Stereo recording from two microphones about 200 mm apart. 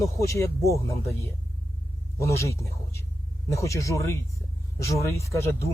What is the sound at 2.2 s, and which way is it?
Speech, 15° left (ahead or behind).